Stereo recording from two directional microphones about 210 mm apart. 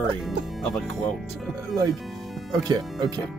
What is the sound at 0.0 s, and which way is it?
Speech, centre (ahead or behind).